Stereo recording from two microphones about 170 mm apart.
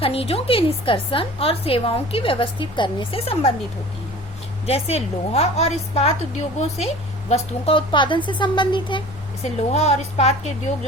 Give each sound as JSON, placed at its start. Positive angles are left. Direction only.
{"t": 0.0, "sound": "a woman's voice", "side_deg": 35}
{"t": 4.6, "sound": "a woman's voice", "side_deg": 35}
{"t": 9.4, "sound": "a woman's voice", "side_deg": 40}